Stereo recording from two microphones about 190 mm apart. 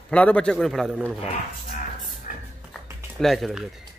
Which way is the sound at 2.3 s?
45° left (ahead or behind).